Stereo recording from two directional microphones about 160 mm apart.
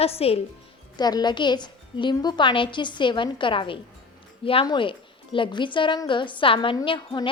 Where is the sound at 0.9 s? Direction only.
25° left (ahead or behind).